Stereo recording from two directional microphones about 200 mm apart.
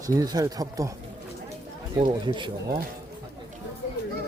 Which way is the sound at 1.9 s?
25° right (ahead or behind).